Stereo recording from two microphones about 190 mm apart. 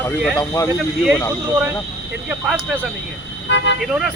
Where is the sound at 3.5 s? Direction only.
70° left (ahead or behind).